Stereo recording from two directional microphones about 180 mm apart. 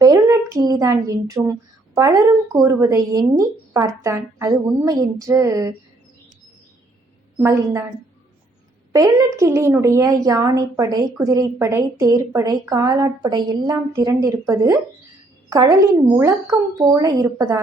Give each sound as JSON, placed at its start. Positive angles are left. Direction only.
{"t": 0.0, "sound": "a woman's voice", "side_deg": -20}
{"t": 7.3, "sound": "a woman's voice", "side_deg": -15}